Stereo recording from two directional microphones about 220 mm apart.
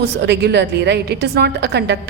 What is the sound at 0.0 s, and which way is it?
A woman's voice, 50° right (ahead or behind).